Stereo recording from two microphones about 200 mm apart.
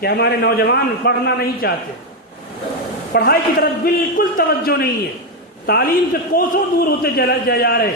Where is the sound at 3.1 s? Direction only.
50° left (ahead or behind).